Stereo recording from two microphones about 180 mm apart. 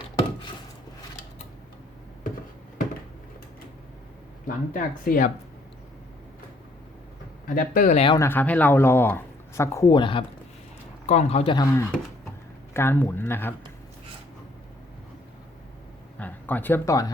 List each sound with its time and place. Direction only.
4.4 s speech: 50° left (ahead or behind)
7.4 s speech: 50° left (ahead or behind); by 8.2 s 30° left (ahead or behind)
8.2 s speech: 10° left (ahead or behind); by 11.5 s 35° left (ahead or behind)
11.5 s speech: 20° left (ahead or behind)
16.1 s a sound: 10° left (ahead or behind)